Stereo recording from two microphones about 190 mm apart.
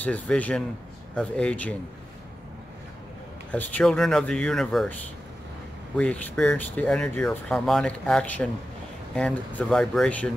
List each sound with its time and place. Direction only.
0.0 s speech: 10° left (ahead or behind)
3.5 s speech: 10° left (ahead or behind)
5.9 s speech: 5° left (ahead or behind)